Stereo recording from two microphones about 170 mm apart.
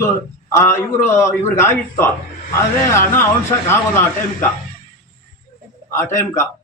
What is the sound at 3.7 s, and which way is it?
Speech, 15° left (ahead or behind).